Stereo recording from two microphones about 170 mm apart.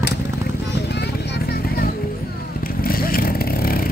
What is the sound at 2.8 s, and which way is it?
Vehicle, 60° left (ahead or behind).